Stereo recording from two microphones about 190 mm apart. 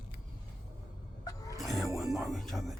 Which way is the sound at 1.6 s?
Centre (ahead or behind).